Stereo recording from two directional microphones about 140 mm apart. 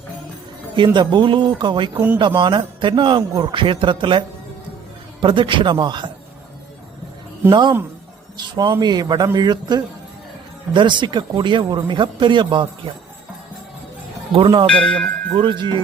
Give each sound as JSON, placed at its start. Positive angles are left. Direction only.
{"t": 0.9, "sound": "a man's voice", "side_deg": -35}
{"t": 5.2, "sound": "a man's voice", "side_deg": -35}
{"t": 7.5, "sound": "a man's voice", "side_deg": -35}
{"t": 14.3, "sound": "a man's voice", "side_deg": -40}
{"t": 14.7, "sound": "speech", "side_deg": 5}
{"t": 15.4, "sound": "a man's voice", "side_deg": -35}